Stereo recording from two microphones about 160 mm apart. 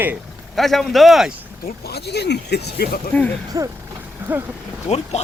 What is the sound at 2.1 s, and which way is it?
Speech, 90° left.